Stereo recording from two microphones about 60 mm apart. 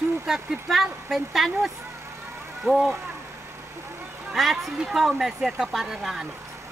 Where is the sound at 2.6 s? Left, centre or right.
Right.